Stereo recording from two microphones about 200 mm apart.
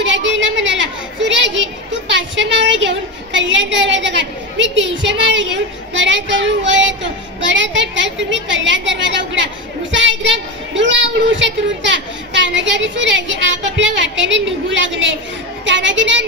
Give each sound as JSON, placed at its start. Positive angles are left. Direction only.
{"t": 0.0, "sound": "a woman's voice", "side_deg": -65}